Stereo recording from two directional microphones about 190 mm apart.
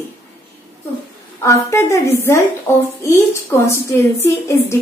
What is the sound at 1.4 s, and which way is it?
A woman's voice, 15° left (ahead or behind).